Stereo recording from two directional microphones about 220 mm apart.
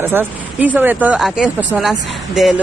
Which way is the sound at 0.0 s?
10° right (ahead or behind).